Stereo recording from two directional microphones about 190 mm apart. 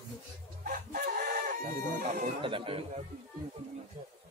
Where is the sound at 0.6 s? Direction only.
50° right (ahead or behind).